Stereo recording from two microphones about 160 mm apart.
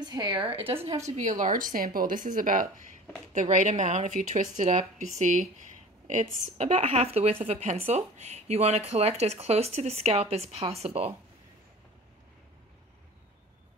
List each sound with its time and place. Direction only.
0.0 s a woman's voice: 25° right (ahead or behind); by 5.5 s 45° right (ahead or behind)
6.6 s speech: 40° right (ahead or behind)